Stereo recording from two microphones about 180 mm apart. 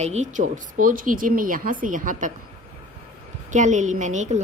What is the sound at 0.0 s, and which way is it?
A woman's voice, 40° right (ahead or behind).